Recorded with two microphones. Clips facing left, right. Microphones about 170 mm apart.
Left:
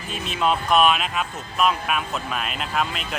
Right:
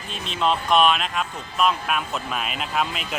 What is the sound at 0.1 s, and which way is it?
Speech, 5° left (ahead or behind).